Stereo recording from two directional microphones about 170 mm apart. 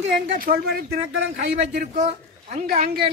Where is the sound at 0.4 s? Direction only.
60° right (ahead or behind).